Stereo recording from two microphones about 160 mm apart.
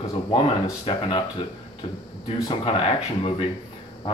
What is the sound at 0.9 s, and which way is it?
Speech, 30° left (ahead or behind).